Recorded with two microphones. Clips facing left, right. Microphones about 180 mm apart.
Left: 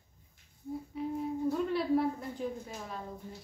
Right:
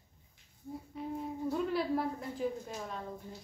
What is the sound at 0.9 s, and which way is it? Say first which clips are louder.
A woman's voice: left 4 dB; 5° left (ahead or behind).